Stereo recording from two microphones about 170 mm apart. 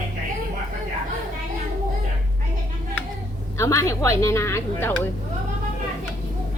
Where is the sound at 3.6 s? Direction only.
15° left (ahead or behind).